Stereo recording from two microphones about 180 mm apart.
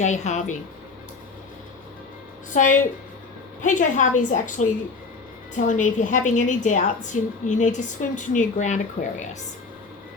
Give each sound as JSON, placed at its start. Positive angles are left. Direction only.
{"t": 0.0, "sound": "a woman's voice", "side_deg": 40}
{"t": 2.5, "sound": "a woman's voice", "side_deg": 45}